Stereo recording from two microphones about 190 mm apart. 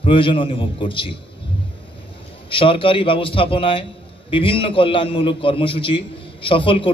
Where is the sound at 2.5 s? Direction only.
25° left (ahead or behind).